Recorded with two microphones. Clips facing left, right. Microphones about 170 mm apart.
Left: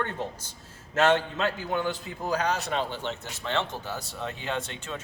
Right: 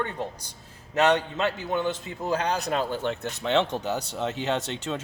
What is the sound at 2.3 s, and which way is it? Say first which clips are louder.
Speech: right 2 dB; 30° right (ahead or behind).